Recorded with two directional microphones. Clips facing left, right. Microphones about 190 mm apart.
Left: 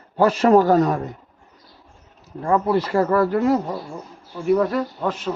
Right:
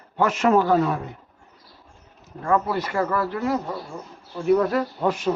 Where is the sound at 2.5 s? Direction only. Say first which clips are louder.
Left 4 dB; 25° left (ahead or behind); by 3.6 s 40° left (ahead or behind).